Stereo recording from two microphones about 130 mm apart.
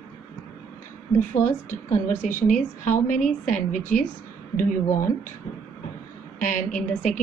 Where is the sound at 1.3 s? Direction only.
75° left (ahead or behind).